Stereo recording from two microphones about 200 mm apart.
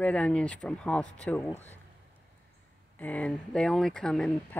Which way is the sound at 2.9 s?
10° left (ahead or behind).